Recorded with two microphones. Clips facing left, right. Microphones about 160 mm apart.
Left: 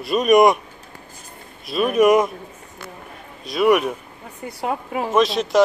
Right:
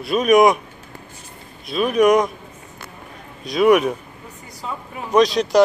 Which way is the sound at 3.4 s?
Centre (ahead or behind).